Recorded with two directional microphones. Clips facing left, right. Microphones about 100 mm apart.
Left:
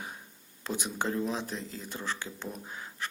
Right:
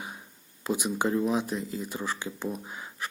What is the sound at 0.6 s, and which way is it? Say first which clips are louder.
Speech: right 5 dB; 10° right (ahead or behind).